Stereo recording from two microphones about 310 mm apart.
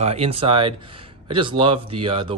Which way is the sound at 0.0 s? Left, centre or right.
Centre.